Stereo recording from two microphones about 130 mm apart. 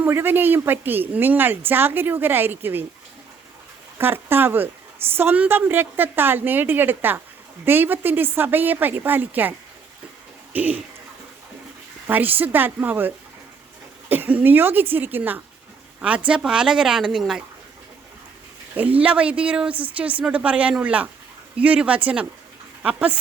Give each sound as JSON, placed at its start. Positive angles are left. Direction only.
{"t": 0.0, "sound": "speech", "side_deg": -15}
{"t": 3.9, "sound": "speech", "side_deg": -15}
{"t": 12.0, "sound": "speech", "side_deg": -15}
{"t": 18.8, "sound": "speech", "side_deg": -10}